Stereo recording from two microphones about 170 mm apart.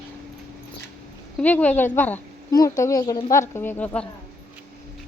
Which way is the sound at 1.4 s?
10° left (ahead or behind).